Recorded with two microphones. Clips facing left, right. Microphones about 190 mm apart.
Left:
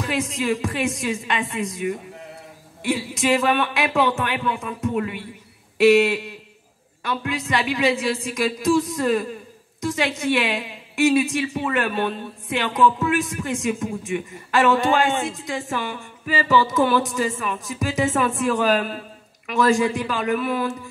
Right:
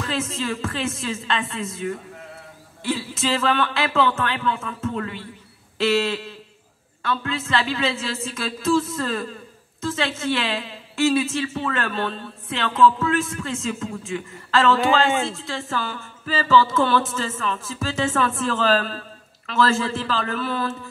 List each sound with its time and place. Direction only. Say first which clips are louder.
0.0 s a woman's voice: left 2 dB; 15° left (ahead or behind)
14.8 s speech: even; centre (ahead or behind)
15.7 s a woman's voice: left 1 dB; 15° left (ahead or behind)